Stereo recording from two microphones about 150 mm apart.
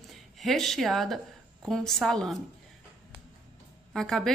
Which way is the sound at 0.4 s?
Centre (ahead or behind).